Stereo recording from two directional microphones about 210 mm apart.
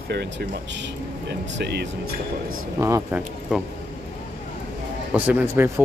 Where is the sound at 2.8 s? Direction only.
10° right (ahead or behind).